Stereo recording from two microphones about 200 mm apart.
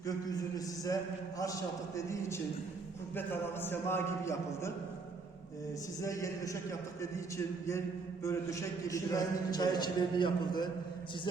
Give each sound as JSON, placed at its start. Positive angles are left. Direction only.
{"t": 0.0, "sound": "a man's voice", "side_deg": 15}
{"t": 6.0, "sound": "a man's voice", "side_deg": 15}